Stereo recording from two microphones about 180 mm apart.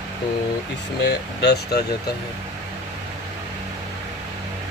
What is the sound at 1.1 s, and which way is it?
Speech, 65° left (ahead or behind).